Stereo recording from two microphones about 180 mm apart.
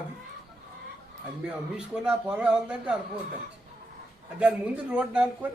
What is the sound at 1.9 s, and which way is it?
Speech, 5° right (ahead or behind).